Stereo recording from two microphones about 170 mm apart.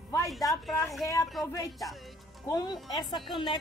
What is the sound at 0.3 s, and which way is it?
Speech, centre (ahead or behind).